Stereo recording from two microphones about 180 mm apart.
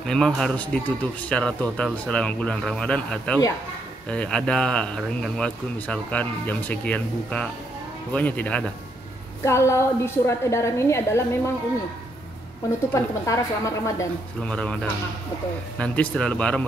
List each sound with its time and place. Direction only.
0.0 s speech: 5° left (ahead or behind)
12.9 s speech: 15° left (ahead or behind)
14.4 s speech: 5° left (ahead or behind)